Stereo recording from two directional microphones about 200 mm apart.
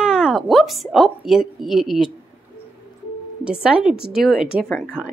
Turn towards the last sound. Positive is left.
turn(degrees=0)  # may be behind; listen again after turning